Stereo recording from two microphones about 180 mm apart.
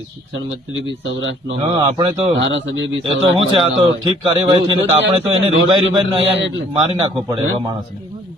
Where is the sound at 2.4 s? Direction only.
90° right.